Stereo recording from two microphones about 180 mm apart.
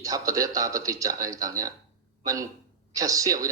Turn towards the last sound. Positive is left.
turn(degrees=-20)  # may be behind; listen again after turning